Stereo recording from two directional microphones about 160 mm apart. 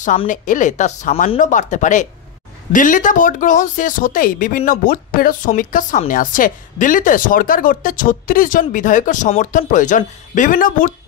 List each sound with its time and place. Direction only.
0.3 s speech: 50° left (ahead or behind)